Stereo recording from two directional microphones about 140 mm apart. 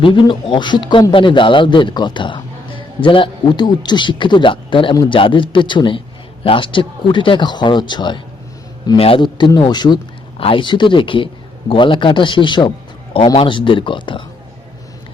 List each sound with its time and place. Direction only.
0.0 s speech: 35° left (ahead or behind)